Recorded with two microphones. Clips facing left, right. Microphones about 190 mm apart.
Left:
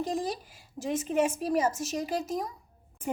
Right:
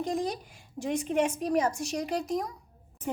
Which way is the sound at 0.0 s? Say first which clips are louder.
Right 1 dB; centre (ahead or behind).